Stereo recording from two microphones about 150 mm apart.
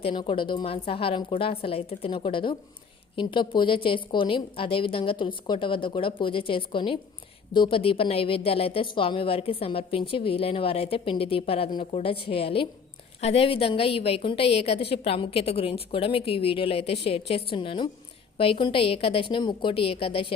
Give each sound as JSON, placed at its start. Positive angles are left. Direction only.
{"t": 0.0, "sound": "a woman's voice", "side_deg": 35}